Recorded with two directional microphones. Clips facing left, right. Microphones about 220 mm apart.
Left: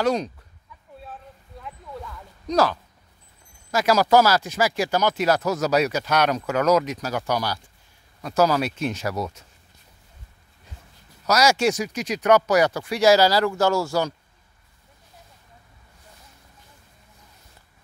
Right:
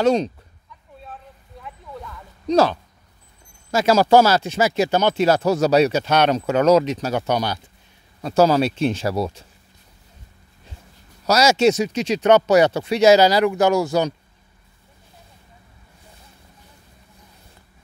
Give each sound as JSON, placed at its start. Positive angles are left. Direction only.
{"t": 0.0, "sound": "speech", "side_deg": -25}
{"t": 1.6, "sound": "a sound", "side_deg": 0}
{"t": 2.4, "sound": "speech", "side_deg": -25}
{"t": 11.2, "sound": "speech", "side_deg": -25}